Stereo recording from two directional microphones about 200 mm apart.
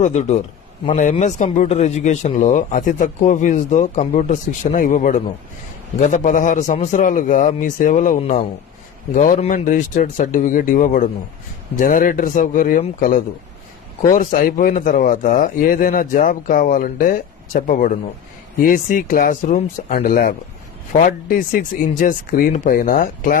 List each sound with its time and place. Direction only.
0.0 s speech: 35° left (ahead or behind)